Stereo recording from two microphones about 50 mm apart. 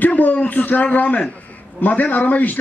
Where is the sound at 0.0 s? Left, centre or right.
Left.